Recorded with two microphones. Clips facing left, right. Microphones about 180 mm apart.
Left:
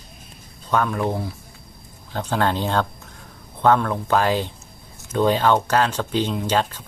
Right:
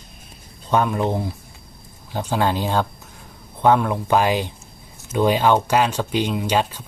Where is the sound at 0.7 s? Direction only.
20° right (ahead or behind).